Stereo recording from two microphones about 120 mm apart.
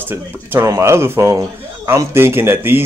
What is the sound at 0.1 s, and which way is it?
A man's voice, 20° right (ahead or behind).